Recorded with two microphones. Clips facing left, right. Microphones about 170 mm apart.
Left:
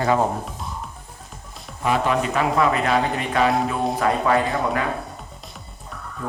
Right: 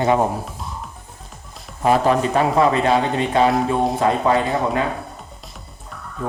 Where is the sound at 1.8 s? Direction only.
35° right (ahead or behind).